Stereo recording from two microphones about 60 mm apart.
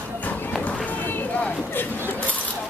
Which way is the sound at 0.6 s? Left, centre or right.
Left.